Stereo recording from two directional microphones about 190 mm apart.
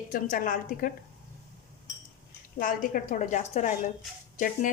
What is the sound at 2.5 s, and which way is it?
A woman's voice, 45° left (ahead or behind).